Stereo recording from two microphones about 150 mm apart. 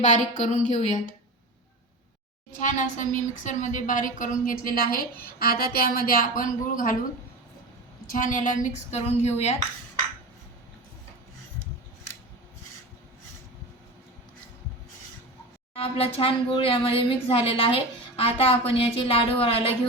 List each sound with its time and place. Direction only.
0.0 s speech: 50° left (ahead or behind)
2.5 s a woman's voice: 60° left (ahead or behind)
5.2 s a woman's voice: 85° left; by 6.9 s 65° left (ahead or behind)
8.0 s speech: 65° left (ahead or behind)
15.7 s speech: 40° left (ahead or behind)